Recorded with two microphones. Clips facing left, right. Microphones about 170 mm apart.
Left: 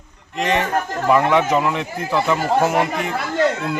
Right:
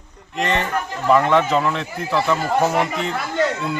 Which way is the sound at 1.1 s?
15° left (ahead or behind).